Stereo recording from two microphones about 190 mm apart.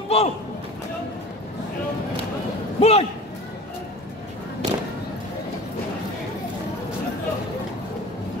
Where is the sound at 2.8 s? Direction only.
35° left (ahead or behind).